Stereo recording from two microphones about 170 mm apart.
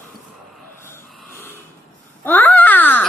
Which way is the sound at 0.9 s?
15° left (ahead or behind).